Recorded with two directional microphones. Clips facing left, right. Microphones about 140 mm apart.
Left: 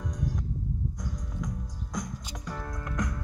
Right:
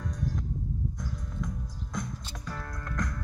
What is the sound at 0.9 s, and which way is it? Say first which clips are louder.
Music: even; 15° left (ahead or behind).